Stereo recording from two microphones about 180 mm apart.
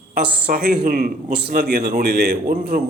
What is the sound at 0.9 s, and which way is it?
A man's voice, 45° right (ahead or behind).